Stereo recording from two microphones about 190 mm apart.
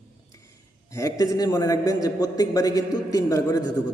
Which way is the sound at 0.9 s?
20° left (ahead or behind).